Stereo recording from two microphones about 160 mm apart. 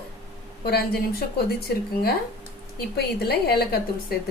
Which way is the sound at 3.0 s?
80° left.